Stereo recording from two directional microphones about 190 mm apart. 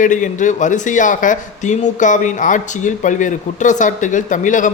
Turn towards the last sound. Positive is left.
turn(degrees=40)  # may be behind; listen again after turning